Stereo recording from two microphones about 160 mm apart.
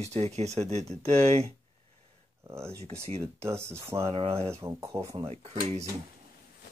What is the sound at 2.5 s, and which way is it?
Speech, 15° right (ahead or behind).